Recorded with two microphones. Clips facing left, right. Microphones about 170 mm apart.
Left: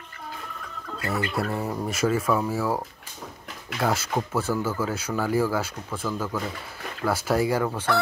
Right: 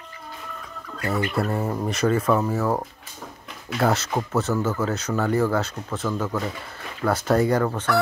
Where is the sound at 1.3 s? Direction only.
Centre (ahead or behind).